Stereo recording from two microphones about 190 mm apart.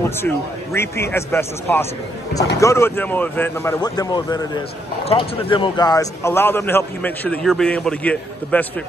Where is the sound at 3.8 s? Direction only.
20° left (ahead or behind).